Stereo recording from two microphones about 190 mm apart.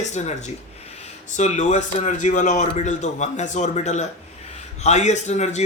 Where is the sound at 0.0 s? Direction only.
35° left (ahead or behind).